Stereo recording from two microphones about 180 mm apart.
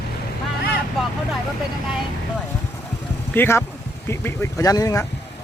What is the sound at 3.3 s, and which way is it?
Speech, 15° left (ahead or behind).